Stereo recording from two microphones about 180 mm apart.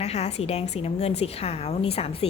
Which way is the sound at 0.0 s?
35° left (ahead or behind).